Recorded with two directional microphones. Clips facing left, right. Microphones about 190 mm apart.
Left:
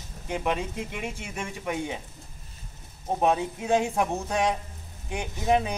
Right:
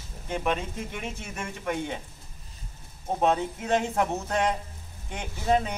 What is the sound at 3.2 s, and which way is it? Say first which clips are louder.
Speech: even; 15° left (ahead or behind).